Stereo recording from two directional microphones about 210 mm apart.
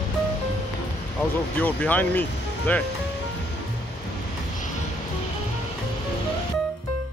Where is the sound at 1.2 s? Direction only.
5° left (ahead or behind).